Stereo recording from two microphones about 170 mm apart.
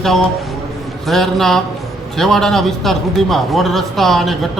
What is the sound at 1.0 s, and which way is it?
A man's voice, centre (ahead or behind).